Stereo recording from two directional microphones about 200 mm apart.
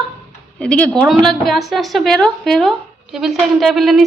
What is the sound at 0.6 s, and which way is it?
A woman's voice, 5° left (ahead or behind).